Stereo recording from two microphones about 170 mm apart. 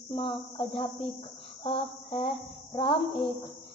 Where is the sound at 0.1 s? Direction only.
30° left (ahead or behind).